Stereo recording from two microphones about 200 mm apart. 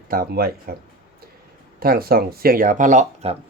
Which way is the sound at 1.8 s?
50° right (ahead or behind).